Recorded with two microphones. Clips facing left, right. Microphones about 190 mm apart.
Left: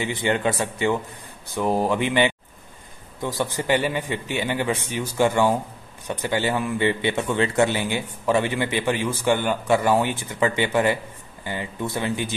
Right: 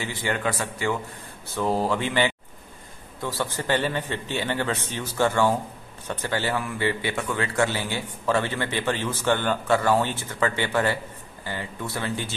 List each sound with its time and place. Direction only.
0.0 s a man's voice: 20° left (ahead or behind)